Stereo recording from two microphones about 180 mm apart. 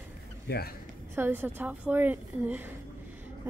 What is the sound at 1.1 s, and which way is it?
Speech, 10° right (ahead or behind).